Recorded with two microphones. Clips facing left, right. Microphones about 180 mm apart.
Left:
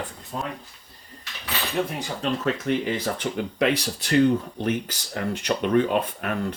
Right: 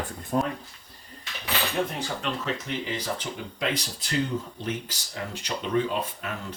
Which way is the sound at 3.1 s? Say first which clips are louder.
Left 8 dB; 65° left (ahead or behind).